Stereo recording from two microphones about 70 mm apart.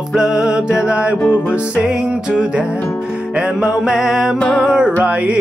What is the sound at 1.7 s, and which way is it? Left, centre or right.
Music, centre.